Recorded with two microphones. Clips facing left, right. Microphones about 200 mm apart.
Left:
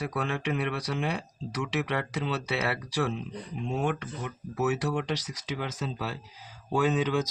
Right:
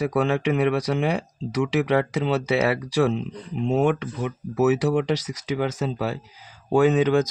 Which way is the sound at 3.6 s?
80° right.